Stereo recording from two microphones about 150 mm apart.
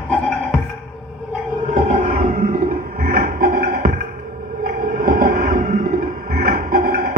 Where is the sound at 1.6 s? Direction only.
55° right (ahead or behind).